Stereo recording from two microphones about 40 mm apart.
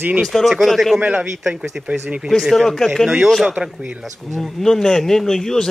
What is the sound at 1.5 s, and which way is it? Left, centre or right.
Speech, right.